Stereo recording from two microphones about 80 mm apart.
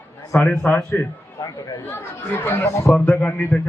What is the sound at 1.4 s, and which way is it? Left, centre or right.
Speech, left.